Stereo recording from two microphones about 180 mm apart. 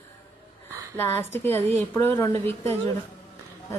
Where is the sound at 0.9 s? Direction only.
10° left (ahead or behind).